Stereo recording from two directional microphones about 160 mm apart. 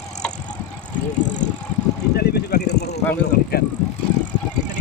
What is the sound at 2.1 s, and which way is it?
Vehicle, 90° left.